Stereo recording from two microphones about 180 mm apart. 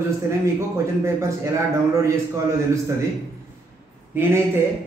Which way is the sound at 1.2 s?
15° right (ahead or behind).